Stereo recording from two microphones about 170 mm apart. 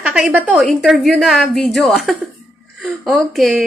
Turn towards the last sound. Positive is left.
turn(degrees=0)  # may be behind; listen again after turning